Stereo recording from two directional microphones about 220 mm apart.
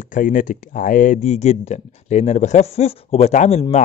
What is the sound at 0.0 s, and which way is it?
Speech, 35° left (ahead or behind).